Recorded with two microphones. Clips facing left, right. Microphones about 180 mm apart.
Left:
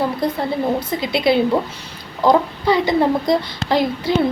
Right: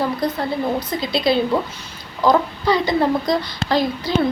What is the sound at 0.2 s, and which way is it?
A woman's voice, 25° left (ahead or behind).